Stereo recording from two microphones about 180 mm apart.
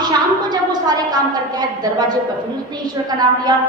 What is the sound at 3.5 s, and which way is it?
Speech, 25° right (ahead or behind).